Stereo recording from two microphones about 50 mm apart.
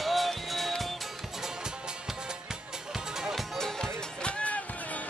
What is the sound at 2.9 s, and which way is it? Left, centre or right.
Music, centre.